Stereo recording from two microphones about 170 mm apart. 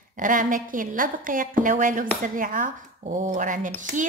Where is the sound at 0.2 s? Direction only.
50° right (ahead or behind).